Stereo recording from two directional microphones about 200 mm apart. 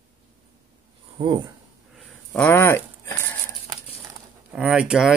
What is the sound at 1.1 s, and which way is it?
Speech, 25° right (ahead or behind).